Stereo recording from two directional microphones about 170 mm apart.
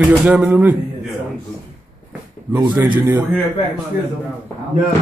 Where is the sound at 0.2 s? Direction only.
5° right (ahead or behind).